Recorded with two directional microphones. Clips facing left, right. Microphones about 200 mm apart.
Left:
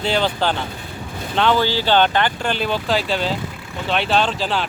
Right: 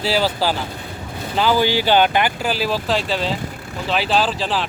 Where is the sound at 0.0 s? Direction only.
5° right (ahead or behind).